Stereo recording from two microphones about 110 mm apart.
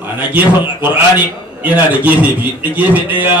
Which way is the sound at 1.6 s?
15° right (ahead or behind).